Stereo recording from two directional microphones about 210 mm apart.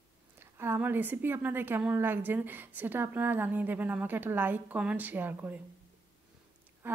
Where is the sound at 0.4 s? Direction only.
10° right (ahead or behind).